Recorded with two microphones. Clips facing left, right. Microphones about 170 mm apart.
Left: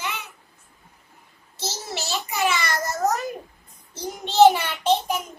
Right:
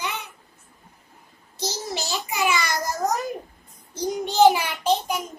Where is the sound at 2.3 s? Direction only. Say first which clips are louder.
Even; 10° right (ahead or behind).